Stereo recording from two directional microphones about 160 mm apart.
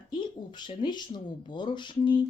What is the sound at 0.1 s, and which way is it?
Speech, 30° left (ahead or behind).